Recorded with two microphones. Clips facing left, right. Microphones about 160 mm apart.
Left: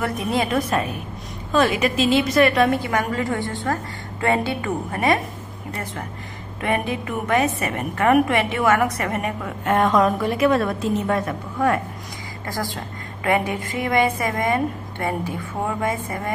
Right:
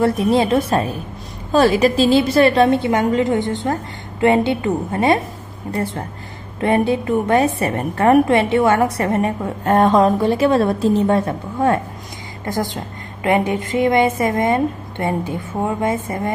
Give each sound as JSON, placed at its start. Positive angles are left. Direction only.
{"t": 0.0, "sound": "a woman's voice", "side_deg": -30}